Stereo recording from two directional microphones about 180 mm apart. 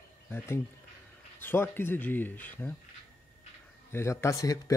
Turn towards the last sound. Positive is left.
turn(degrees=20)  # may be behind; listen again after turning